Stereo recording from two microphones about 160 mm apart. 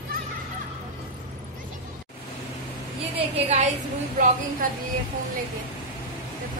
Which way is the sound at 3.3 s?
45° right (ahead or behind).